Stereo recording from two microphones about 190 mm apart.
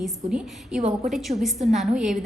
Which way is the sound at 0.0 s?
5° right (ahead or behind).